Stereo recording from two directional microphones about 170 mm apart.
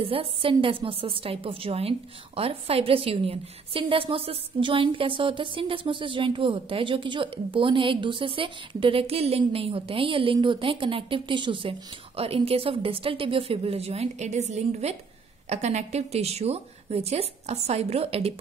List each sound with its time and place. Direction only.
0.0 s a woman's voice: 35° right (ahead or behind)